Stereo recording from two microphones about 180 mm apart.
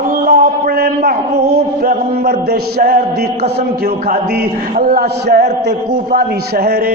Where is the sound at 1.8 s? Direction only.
55° right (ahead or behind).